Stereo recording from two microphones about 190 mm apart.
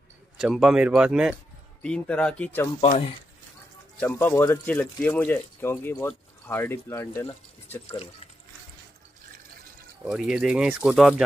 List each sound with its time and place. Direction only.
0.4 s speech: 5° right (ahead or behind)
1.8 s speech: 5° left (ahead or behind)
2.8 s speech: 30° left (ahead or behind)
4.0 s speech: 10° left (ahead or behind)
10.0 s speech: 5° right (ahead or behind)